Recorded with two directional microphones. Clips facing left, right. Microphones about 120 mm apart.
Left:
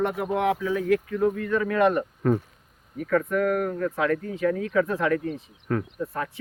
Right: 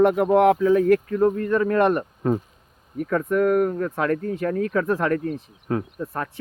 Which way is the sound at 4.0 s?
50° right (ahead or behind).